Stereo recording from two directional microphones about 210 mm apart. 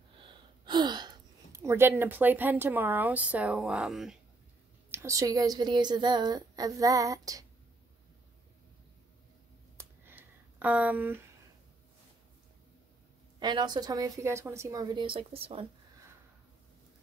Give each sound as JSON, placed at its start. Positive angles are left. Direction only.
{"t": 0.2, "sound": "speech", "side_deg": -20}
{"t": 4.9, "sound": "a woman's voice", "side_deg": -15}
{"t": 9.8, "sound": "a sound", "side_deg": -10}
{"t": 13.4, "sound": "a woman's voice", "side_deg": -20}